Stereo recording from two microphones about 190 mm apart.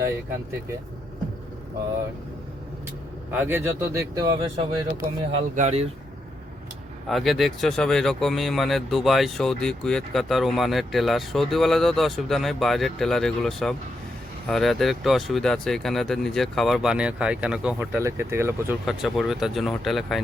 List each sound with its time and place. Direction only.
3.3 s speech: 10° right (ahead or behind); by 5.9 s 35° right (ahead or behind)
7.1 s speech: centre (ahead or behind)
18.9 s speech: centre (ahead or behind)